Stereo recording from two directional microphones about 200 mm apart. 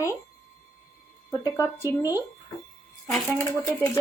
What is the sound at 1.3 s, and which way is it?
Speech, 15° left (ahead or behind).